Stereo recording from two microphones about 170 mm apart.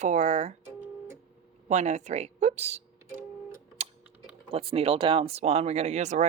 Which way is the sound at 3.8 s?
40° right (ahead or behind).